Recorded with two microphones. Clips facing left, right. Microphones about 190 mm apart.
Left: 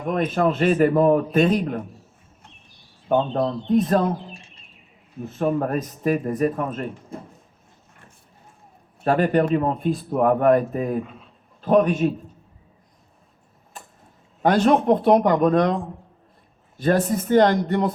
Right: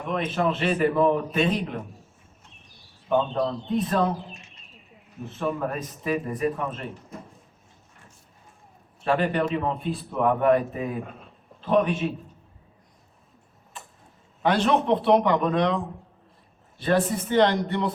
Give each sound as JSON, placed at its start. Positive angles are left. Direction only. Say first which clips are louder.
{"t": 0.1, "sound": "speech", "louder": "left 4 dB", "side_deg": 45}
{"t": 3.3, "sound": "speech", "louder": "left 5 dB", "side_deg": 45}
{"t": 5.4, "sound": "speech", "louder": "left 6 dB", "side_deg": 45}
{"t": 7.1, "sound": "speech", "louder": "left 5 dB", "side_deg": 30}
{"t": 9.0, "sound": "speech", "louder": "left 5 dB", "side_deg": 45}
{"t": 14.4, "sound": "speech", "louder": "left 5 dB", "side_deg": 45}